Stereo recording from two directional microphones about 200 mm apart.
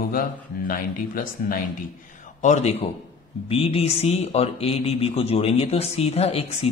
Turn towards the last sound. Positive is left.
turn(degrees=30)  # may be behind; listen again after turning